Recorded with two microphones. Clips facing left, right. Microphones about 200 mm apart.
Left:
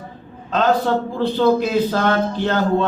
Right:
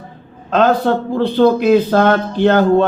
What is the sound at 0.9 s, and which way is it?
A man's voice, 60° right (ahead or behind).